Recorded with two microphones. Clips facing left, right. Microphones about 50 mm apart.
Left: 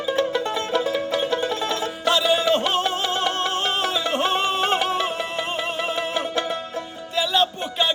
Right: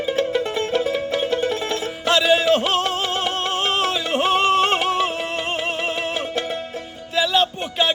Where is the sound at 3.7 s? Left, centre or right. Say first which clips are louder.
Right 2 dB; right.